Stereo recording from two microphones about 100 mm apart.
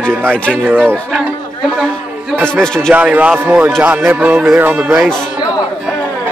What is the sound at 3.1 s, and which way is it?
Speech, 15° right (ahead or behind).